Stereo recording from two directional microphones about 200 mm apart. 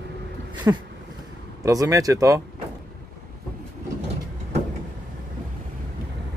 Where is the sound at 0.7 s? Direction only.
15° right (ahead or behind).